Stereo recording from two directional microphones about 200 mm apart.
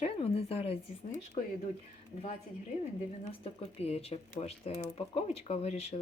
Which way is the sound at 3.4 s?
30° left (ahead or behind).